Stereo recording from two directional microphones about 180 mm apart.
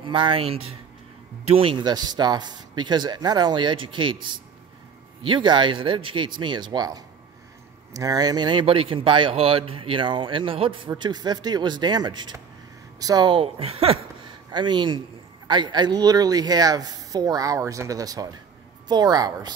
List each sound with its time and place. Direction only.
0.0 s a woman's voice: 30° right (ahead or behind)